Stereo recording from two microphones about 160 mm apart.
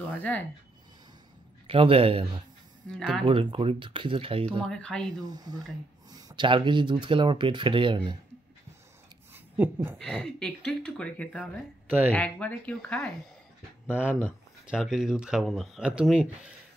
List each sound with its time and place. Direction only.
0.1 s speech: 10° left (ahead or behind)
1.7 s speech: 35° right (ahead or behind)
2.9 s speech: 5° left (ahead or behind)
3.3 s speech: 35° right (ahead or behind)
4.6 s speech: 5° left (ahead or behind)
5.2 s speech: 25° right (ahead or behind)
9.3 s a sound: 15° right (ahead or behind)
9.9 s speech: 5° left (ahead or behind)
13.8 s speech: 10° right (ahead or behind)